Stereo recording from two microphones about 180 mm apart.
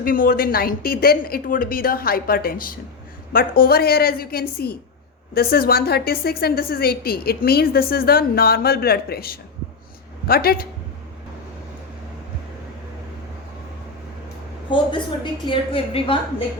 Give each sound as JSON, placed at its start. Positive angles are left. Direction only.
{"t": 0.0, "sound": "a woman's voice", "side_deg": 55}
{"t": 14.7, "sound": "a woman's voice", "side_deg": 25}